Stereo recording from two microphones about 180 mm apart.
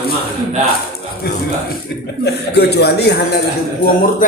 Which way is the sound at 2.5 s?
65° left (ahead or behind).